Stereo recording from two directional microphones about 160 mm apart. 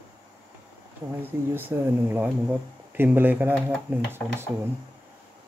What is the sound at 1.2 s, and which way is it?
Speech, 10° right (ahead or behind).